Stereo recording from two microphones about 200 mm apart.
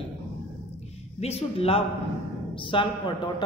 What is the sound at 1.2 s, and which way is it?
A woman's voice, 30° left (ahead or behind).